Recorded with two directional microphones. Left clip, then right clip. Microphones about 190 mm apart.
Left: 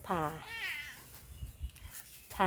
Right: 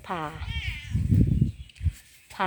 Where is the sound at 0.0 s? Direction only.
10° right (ahead or behind).